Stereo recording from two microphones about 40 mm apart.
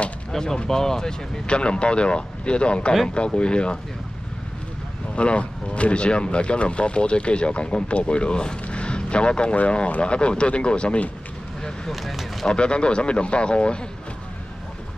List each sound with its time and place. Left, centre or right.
0.3 s speech: centre
1.4 s speech: left
5.1 s speech: left
9.8 s speech: left
10.1 s speech: left
11.9 s speech: centre
12.4 s speech: left